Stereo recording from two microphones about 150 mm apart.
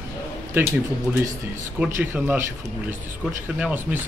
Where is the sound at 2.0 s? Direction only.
15° right (ahead or behind).